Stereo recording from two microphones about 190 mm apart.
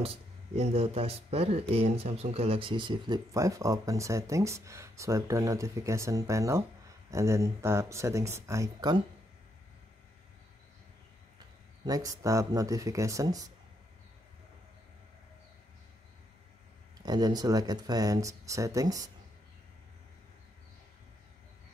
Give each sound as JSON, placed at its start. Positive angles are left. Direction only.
{"t": 0.0, "sound": "speech", "side_deg": -30}
{"t": 11.8, "sound": "speech", "side_deg": -20}
{"t": 17.0, "sound": "speech", "side_deg": -20}